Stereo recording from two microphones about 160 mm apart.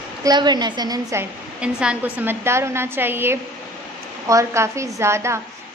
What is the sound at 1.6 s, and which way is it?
A woman's voice, 5° right (ahead or behind).